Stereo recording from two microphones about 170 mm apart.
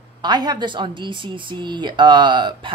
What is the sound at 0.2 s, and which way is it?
Speech, 25° right (ahead or behind).